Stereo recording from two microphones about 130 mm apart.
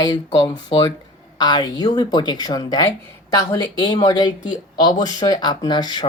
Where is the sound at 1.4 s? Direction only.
35° left (ahead or behind).